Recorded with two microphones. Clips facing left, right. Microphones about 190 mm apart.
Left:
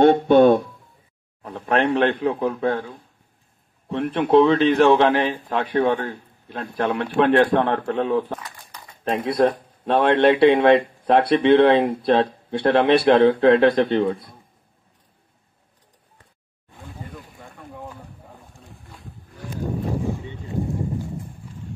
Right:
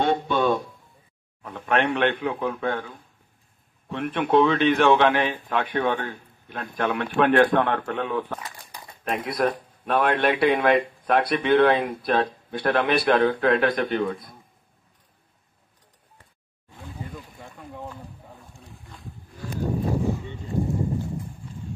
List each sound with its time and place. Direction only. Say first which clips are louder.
0.0 s speech: left 9 dB; 55° left (ahead or behind)
1.4 s a man's voice: left 3 dB; 35° left (ahead or behind)